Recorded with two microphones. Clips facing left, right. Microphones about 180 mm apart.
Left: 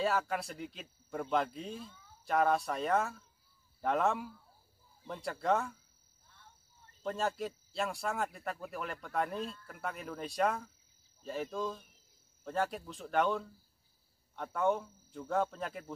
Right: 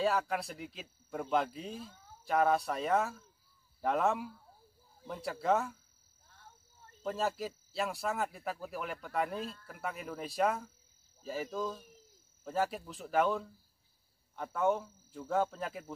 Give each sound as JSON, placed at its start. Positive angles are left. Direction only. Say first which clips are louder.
{"t": 0.0, "sound": "speech", "louder": "right 1 dB", "side_deg": 0}
{"t": 6.2, "sound": "a sound", "louder": "right 3 dB", "side_deg": -45}
{"t": 7.0, "sound": "speech", "louder": "even", "side_deg": -5}